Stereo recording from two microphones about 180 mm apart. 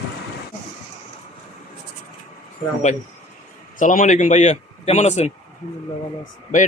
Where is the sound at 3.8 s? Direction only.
45° left (ahead or behind).